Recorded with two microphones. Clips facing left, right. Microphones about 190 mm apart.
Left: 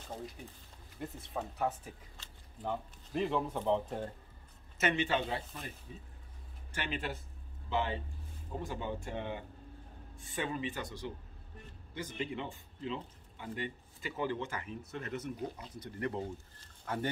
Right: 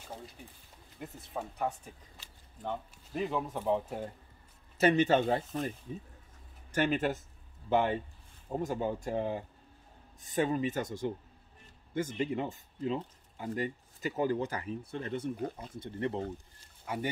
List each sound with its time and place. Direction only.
0.9 s speech: centre (ahead or behind)
4.7 s speech: 40° right (ahead or behind)
6.7 s speech: 45° right (ahead or behind); by 16.2 s 25° right (ahead or behind)
16.5 s a sound: 10° right (ahead or behind)